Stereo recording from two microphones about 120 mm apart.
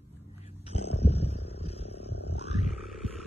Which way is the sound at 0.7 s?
60° left (ahead or behind).